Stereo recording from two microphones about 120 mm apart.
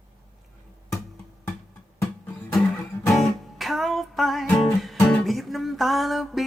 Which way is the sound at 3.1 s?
Centre (ahead or behind).